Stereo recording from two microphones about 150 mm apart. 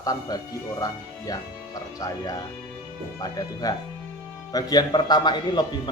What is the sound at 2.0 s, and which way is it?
Speech, 25° left (ahead or behind).